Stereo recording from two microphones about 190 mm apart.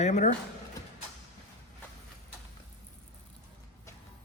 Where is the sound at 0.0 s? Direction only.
40° left (ahead or behind).